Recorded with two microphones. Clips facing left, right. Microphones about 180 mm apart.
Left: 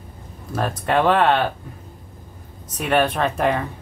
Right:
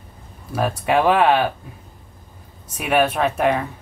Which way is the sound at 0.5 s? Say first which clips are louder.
Right 2 dB; 10° right (ahead or behind).